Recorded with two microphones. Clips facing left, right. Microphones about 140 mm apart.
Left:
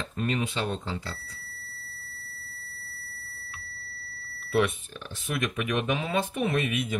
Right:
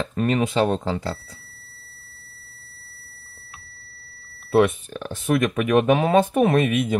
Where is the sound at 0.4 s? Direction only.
50° right (ahead or behind).